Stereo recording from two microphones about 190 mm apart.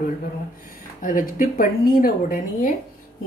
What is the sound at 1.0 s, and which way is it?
A woman's voice, 45° left (ahead or behind).